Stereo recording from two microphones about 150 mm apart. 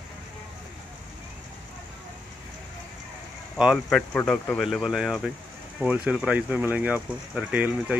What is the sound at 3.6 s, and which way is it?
Speech, centre (ahead or behind).